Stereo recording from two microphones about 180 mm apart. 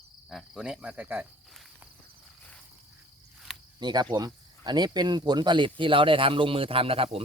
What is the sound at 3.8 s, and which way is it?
Speech, 25° right (ahead or behind).